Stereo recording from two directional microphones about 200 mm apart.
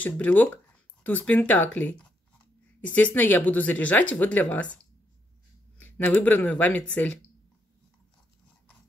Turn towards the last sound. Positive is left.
turn(degrees=10)  # may be behind; listen again after turning